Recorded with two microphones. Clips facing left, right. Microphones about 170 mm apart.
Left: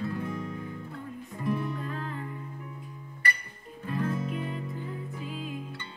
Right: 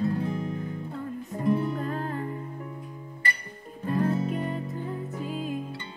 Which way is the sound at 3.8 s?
35° right (ahead or behind).